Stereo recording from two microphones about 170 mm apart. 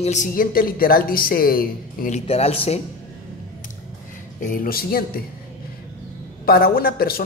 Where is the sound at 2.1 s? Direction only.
35° left (ahead or behind).